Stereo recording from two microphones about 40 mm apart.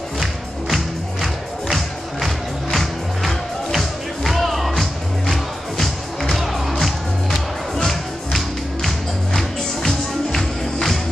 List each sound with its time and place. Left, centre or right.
0.2 s music: centre
6.3 s music: centre